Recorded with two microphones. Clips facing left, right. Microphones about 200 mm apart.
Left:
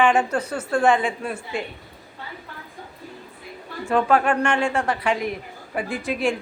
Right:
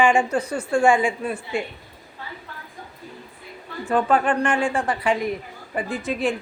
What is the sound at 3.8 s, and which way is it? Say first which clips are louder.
A woman's voice: left 1 dB; centre (ahead or behind).